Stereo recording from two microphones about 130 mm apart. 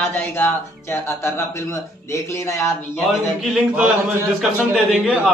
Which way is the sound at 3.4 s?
Centre (ahead or behind).